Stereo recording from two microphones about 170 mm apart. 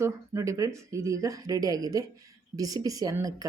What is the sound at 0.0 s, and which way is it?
Speech, 15° right (ahead or behind).